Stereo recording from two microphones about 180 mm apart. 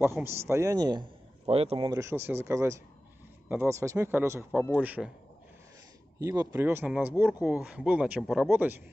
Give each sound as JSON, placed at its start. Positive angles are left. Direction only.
{"t": 0.0, "sound": "a man's voice", "side_deg": -15}
{"t": 1.9, "sound": "speech", "side_deg": -15}
{"t": 6.1, "sound": "speech", "side_deg": -20}